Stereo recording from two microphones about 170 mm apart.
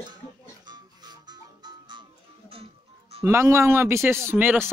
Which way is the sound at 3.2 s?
15° right (ahead or behind).